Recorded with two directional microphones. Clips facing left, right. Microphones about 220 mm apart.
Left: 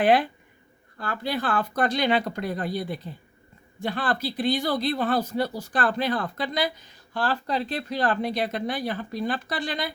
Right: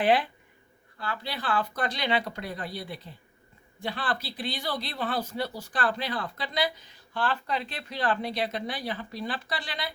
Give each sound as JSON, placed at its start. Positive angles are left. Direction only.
{"t": 0.0, "sound": "speech", "side_deg": 45}